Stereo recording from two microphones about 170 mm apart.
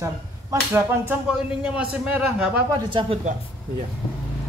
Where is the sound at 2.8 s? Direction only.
30° right (ahead or behind).